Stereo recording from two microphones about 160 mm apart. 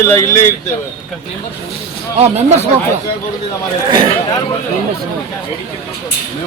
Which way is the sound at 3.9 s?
30° right (ahead or behind).